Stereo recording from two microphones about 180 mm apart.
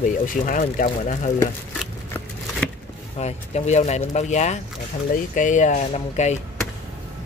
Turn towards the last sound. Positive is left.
turn(degrees=40)  # may be behind; listen again after turning